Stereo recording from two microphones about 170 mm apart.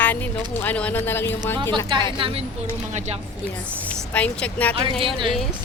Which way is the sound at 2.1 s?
30° right (ahead or behind).